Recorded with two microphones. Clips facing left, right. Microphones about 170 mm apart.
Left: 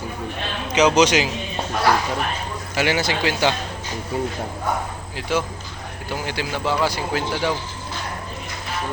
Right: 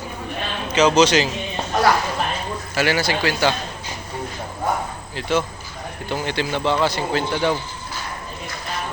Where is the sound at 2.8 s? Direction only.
20° left (ahead or behind).